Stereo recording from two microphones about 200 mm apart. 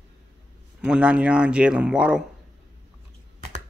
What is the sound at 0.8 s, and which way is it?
Speech, 5° right (ahead or behind).